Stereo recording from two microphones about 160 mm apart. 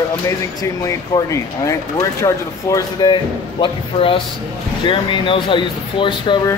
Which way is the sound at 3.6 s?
35° left (ahead or behind).